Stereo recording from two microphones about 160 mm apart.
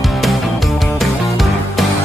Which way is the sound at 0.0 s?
Centre (ahead or behind).